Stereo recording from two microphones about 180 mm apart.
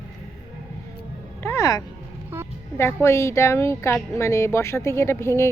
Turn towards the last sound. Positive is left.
turn(degrees=15)  # may be behind; listen again after turning